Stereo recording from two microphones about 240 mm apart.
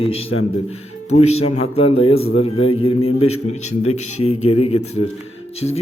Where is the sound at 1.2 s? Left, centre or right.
Left.